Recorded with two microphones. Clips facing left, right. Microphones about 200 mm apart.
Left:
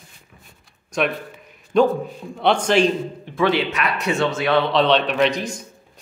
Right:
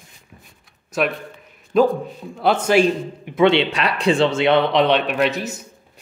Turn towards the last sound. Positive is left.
turn(degrees=-5)  # may be behind; listen again after turning